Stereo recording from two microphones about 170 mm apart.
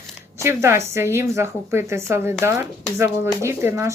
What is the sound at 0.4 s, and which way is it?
Speech, 15° right (ahead or behind).